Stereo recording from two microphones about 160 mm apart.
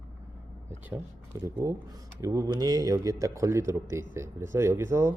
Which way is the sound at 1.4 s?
20° right (ahead or behind).